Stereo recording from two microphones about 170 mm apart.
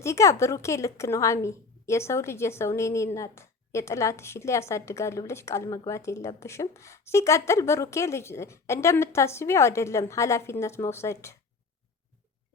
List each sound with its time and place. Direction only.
0.0 s a woman's voice: 15° left (ahead or behind)